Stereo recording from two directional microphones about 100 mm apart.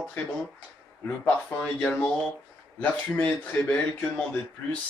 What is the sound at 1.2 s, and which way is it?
Speech, 15° left (ahead or behind).